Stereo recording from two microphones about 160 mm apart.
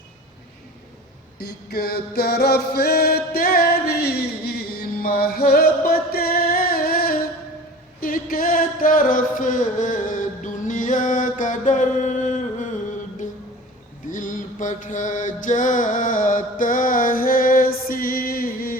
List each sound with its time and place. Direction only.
1.4 s music: 75° left (ahead or behind); by 12.7 s 50° left (ahead or behind)
14.1 s mantra: 55° left (ahead or behind)